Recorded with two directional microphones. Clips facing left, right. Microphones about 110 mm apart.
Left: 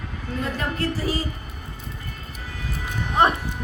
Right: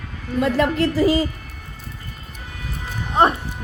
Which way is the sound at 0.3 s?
80° right.